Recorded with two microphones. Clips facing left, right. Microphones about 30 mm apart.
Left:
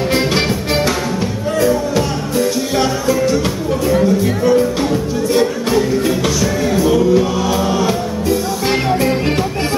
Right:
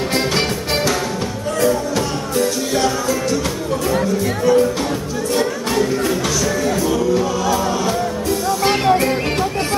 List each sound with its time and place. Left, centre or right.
1.6 s music: centre
2.8 s music: centre